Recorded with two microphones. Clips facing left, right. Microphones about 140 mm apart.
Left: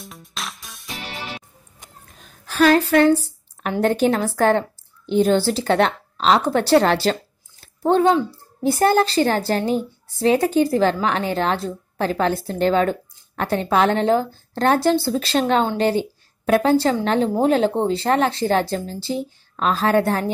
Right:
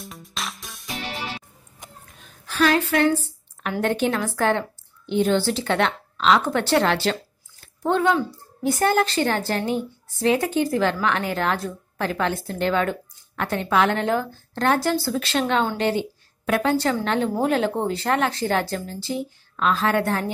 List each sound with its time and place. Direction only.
0.0 s music: centre (ahead or behind)
2.1 s a sound: 40° left (ahead or behind)
3.8 s a woman's voice: 35° left (ahead or behind)